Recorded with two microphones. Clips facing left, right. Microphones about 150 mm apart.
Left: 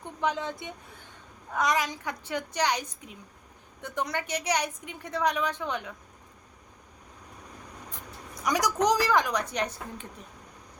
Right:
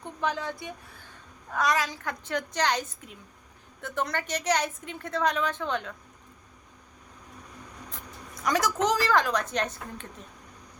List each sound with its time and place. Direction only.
0.0 s a woman's voice: 20° left (ahead or behind)
8.4 s a woman's voice: 15° left (ahead or behind)